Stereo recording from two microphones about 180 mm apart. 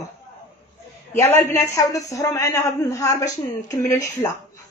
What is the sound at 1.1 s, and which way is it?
A woman's voice, 15° left (ahead or behind).